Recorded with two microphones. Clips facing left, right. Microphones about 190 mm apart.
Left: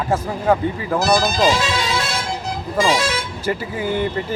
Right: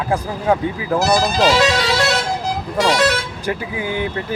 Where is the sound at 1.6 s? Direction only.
75° right (ahead or behind).